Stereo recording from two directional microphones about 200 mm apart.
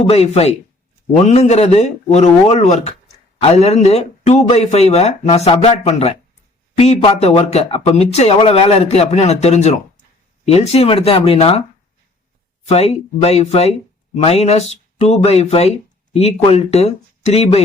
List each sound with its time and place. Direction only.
0.1 s speech: 30° left (ahead or behind)
12.6 s speech: 30° left (ahead or behind)